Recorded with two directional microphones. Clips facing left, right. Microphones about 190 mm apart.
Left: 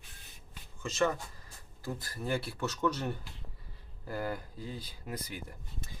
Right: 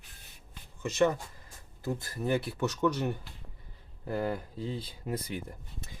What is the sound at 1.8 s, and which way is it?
Speech, 25° right (ahead or behind).